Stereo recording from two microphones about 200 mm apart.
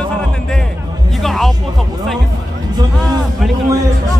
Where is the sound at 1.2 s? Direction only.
Centre (ahead or behind).